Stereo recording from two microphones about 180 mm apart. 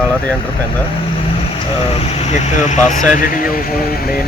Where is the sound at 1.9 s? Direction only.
35° left (ahead or behind); by 4.1 s 55° left (ahead or behind).